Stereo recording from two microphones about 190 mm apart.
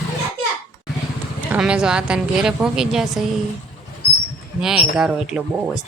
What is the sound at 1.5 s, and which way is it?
A woman's voice, 5° right (ahead or behind).